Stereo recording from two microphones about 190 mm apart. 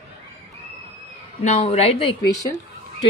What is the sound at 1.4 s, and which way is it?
Speech, 35° left (ahead or behind).